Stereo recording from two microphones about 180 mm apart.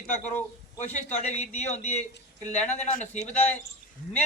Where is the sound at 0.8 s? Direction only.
40° left (ahead or behind).